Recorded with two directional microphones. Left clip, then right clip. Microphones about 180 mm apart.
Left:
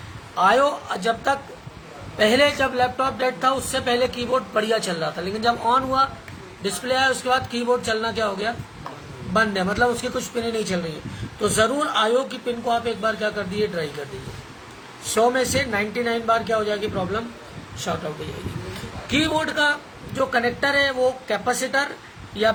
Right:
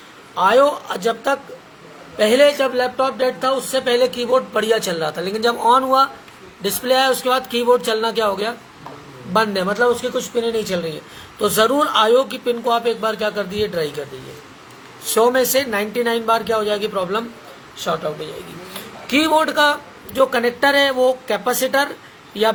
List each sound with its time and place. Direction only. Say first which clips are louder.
0.3 s speech: right 4 dB; 20° right (ahead or behind)
15.1 s speech: right 4 dB; 35° right (ahead or behind)
19.1 s speech: right 6 dB; 35° right (ahead or behind)